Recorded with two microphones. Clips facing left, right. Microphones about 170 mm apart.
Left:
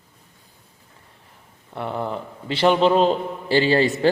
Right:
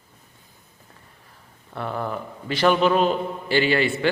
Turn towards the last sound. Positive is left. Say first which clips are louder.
# left 3 dB
turn(degrees=35)  # may be behind; listen again after turning